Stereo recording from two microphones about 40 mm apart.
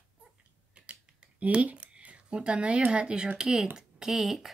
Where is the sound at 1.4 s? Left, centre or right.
Right.